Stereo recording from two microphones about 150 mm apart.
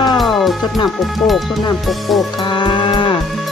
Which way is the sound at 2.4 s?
35° left (ahead or behind).